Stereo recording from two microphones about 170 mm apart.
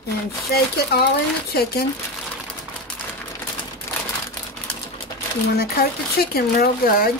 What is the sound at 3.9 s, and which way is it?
Crumpling, 15° left (ahead or behind).